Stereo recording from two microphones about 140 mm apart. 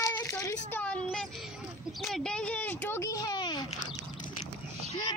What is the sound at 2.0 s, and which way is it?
A child's voice, centre (ahead or behind).